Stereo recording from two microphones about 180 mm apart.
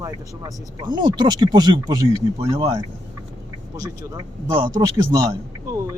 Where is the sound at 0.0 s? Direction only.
20° right (ahead or behind).